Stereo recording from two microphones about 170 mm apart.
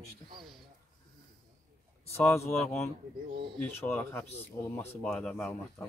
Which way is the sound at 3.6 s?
10° left (ahead or behind).